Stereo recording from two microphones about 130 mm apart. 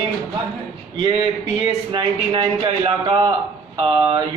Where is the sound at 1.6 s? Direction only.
35° right (ahead or behind).